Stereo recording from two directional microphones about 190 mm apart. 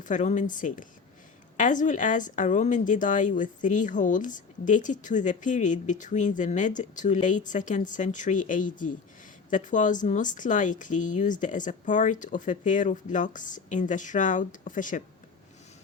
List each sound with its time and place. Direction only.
0.0 s a woman's voice: 40° left (ahead or behind)